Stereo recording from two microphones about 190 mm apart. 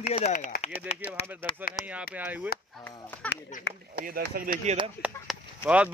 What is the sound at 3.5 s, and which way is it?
Speech, 40° left (ahead or behind).